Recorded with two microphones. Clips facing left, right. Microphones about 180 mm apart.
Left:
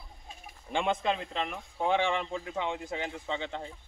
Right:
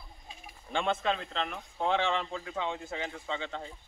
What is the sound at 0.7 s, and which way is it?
A man's voice, 15° left (ahead or behind).